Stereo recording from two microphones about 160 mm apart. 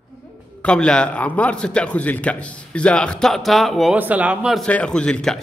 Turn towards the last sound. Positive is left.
turn(degrees=5)  # may be behind; listen again after turning